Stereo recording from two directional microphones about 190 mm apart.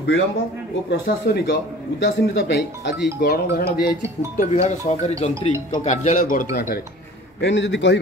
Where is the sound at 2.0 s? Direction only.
65° left (ahead or behind).